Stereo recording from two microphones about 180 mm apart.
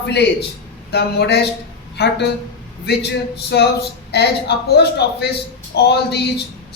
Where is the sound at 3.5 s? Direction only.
65° left (ahead or behind).